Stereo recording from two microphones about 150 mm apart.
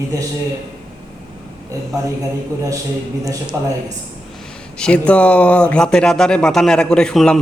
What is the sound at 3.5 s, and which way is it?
Speech, 15° right (ahead or behind).